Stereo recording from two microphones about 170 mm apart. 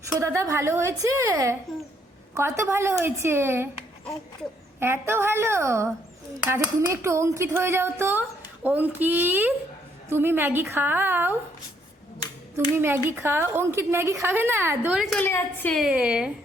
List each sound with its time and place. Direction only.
0.1 s a woman's voice: 15° right (ahead or behind)
4.8 s a woman's voice: 15° right (ahead or behind)
12.7 s a woman's voice: 15° right (ahead or behind)
15.2 s a woman's voice: 10° left (ahead or behind)
15.8 s a woman's voice: 5° right (ahead or behind)